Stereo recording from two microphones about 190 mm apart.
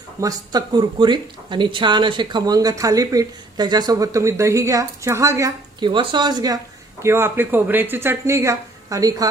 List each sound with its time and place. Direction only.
0.2 s speech: 20° right (ahead or behind)